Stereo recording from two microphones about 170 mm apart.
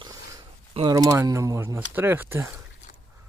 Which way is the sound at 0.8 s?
20° right (ahead or behind).